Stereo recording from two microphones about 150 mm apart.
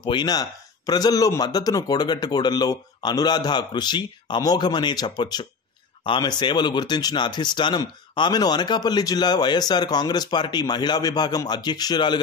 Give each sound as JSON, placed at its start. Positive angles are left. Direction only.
{"t": 0.0, "sound": "speech", "side_deg": 30}